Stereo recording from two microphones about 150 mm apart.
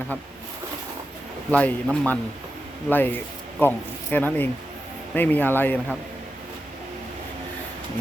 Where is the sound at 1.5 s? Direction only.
10° left (ahead or behind).